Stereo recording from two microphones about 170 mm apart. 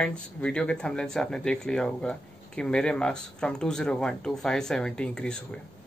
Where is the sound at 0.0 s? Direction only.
5° left (ahead or behind).